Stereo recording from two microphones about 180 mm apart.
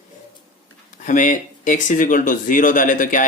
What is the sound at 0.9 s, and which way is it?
Speech, 45° left (ahead or behind).